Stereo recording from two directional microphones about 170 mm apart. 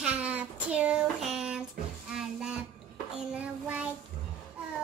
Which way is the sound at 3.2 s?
10° right (ahead or behind).